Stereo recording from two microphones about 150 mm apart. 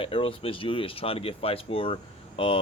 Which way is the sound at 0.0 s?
35° left (ahead or behind).